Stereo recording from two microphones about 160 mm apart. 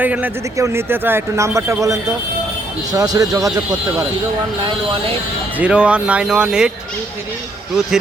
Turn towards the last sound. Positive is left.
turn(degrees=-5)  # may be behind; listen again after turning